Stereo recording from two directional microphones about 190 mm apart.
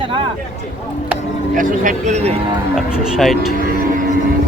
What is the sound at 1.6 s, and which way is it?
Speech, 40° right (ahead or behind).